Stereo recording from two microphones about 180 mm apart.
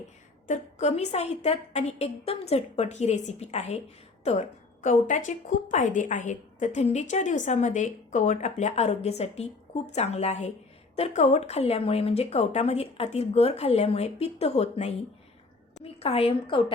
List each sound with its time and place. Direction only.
0.4 s a woman's voice: 40° left (ahead or behind)